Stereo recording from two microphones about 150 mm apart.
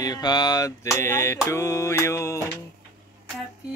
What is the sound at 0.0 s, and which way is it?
Mantra, 25° left (ahead or behind).